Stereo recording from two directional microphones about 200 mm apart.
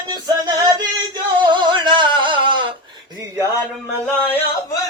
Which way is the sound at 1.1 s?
20° right (ahead or behind).